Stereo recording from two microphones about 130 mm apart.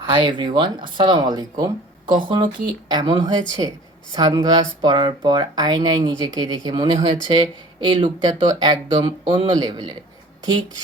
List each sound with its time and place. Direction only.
0.0 s speech: 40° right (ahead or behind)